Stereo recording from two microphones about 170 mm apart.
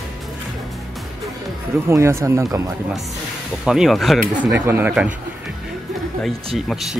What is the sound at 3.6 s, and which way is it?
Speech, 5° right (ahead or behind).